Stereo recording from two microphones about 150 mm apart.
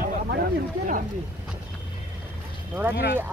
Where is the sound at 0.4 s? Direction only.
65° right (ahead or behind).